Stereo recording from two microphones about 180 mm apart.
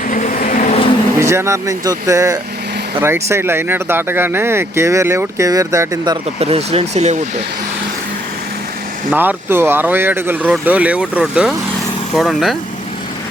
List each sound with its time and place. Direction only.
0.1 s vehicle: 45° left (ahead or behind)
1.2 s speech: 15° right (ahead or behind)
6.4 s speech: 35° right (ahead or behind)
9.1 s speech: 10° right (ahead or behind)